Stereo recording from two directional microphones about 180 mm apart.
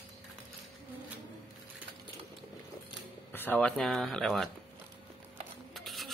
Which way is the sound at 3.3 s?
10° left (ahead or behind).